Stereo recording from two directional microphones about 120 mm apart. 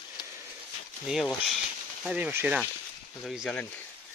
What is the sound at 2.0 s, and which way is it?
Speech, 15° right (ahead or behind).